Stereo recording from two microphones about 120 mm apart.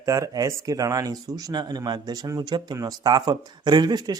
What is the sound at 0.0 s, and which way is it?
Speech, 25° right (ahead or behind).